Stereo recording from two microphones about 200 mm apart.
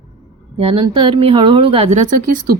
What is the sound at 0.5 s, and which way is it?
Speech, 30° right (ahead or behind).